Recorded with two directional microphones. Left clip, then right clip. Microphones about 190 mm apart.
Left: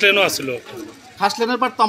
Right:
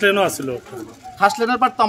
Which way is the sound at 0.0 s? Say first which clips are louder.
Left 2 dB; 50° right (ahead or behind).